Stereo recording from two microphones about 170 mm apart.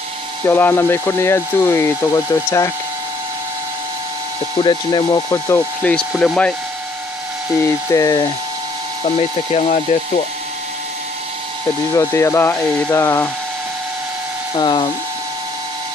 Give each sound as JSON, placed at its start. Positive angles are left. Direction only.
{"t": 0.5, "sound": "speech", "side_deg": 10}
{"t": 4.6, "sound": "speech", "side_deg": 25}
{"t": 5.8, "sound": "speech", "side_deg": 5}
{"t": 7.9, "sound": "speech", "side_deg": 20}
{"t": 9.0, "sound": "speech", "side_deg": 40}
{"t": 11.9, "sound": "speech", "side_deg": 15}
{"t": 14.5, "sound": "speech", "side_deg": 25}